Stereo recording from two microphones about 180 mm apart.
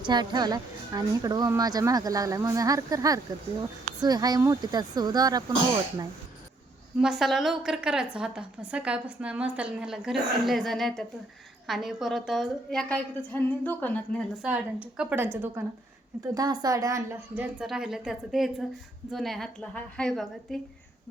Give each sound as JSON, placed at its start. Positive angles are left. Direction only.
{"t": 0.0, "sound": "speech", "side_deg": -25}
{"t": 7.0, "sound": "a woman's voice", "side_deg": 0}
{"t": 14.4, "sound": "a woman's voice", "side_deg": -5}